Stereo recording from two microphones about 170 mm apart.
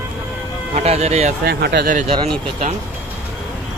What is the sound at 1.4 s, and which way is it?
Speech, 70° right (ahead or behind).